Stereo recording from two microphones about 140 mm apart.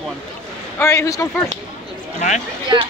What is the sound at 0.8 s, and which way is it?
Speech, 20° left (ahead or behind).